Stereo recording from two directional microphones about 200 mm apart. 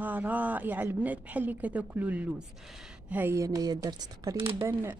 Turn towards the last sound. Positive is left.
turn(degrees=-10)  # may be behind; listen again after turning